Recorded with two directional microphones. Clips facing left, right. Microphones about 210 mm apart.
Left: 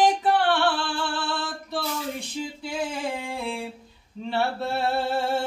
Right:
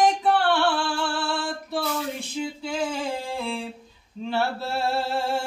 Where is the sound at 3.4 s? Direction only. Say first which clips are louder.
Right 1 dB; centre (ahead or behind).